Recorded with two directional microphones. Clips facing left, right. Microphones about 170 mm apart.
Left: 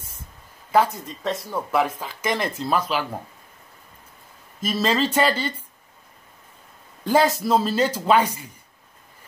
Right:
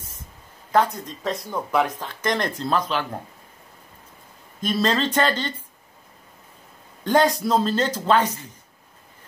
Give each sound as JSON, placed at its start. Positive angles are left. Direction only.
{"t": 0.7, "sound": "speech", "side_deg": 5}
{"t": 4.6, "sound": "speech", "side_deg": 5}
{"t": 7.1, "sound": "speech", "side_deg": 5}